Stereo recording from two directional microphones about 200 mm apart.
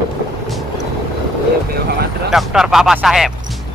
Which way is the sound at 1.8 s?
50° right (ahead or behind).